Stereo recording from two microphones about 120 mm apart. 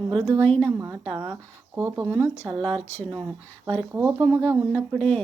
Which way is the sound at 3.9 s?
20° right (ahead or behind).